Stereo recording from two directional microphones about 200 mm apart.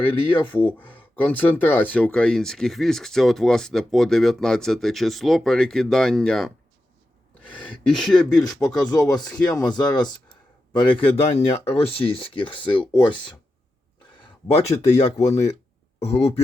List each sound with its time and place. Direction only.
0.0 s speech: 25° left (ahead or behind)
0.5 s speech: 10° left (ahead or behind)
7.9 s speech: 5° left (ahead or behind)
8.9 s speech: 20° left (ahead or behind)
14.4 s speech: 35° left (ahead or behind)